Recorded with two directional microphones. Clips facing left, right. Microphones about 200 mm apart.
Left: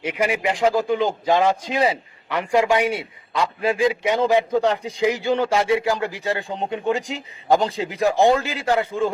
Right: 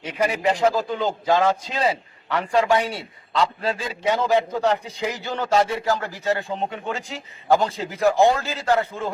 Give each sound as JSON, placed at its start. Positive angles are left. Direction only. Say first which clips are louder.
{"t": 0.0, "sound": "a man's voice", "louder": "even", "side_deg": 10}